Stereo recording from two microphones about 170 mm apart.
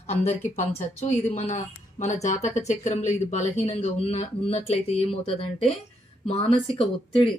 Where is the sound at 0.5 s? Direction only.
45° left (ahead or behind).